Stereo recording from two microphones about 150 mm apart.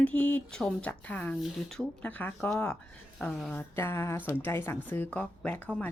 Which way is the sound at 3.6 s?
15° left (ahead or behind).